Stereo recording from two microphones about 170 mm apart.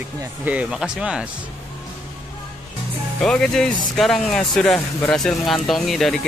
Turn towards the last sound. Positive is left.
turn(degrees=0)  # may be behind; listen again after turning